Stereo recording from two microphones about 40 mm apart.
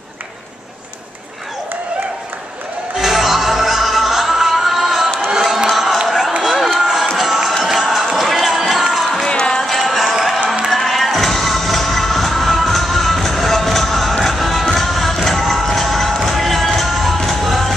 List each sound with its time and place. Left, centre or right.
3.0 s music: centre
5.4 s crowd: centre
6.0 s run: centre
7.6 s music: centre
9.3 s music: left
9.7 s music: centre
10.1 s a sound: centre
10.7 s music: centre